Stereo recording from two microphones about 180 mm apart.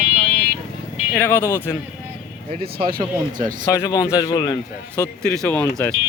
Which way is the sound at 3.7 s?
20° left (ahead or behind).